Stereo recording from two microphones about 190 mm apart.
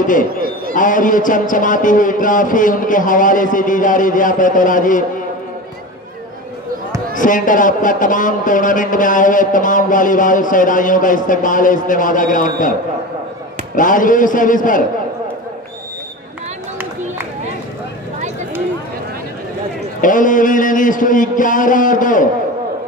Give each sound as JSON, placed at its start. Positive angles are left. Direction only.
{"t": 0.0, "sound": "a man's voice", "side_deg": 45}
{"t": 7.2, "sound": "a man's voice", "side_deg": 45}
{"t": 13.7, "sound": "a man's voice", "side_deg": 45}
{"t": 20.0, "sound": "a man's voice", "side_deg": 45}